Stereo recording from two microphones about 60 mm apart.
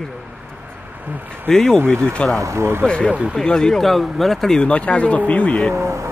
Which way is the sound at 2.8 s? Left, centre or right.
Centre.